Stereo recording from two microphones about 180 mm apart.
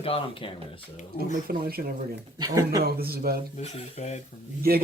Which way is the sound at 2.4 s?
20° right (ahead or behind).